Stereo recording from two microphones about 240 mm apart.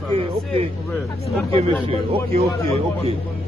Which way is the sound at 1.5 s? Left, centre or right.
Right.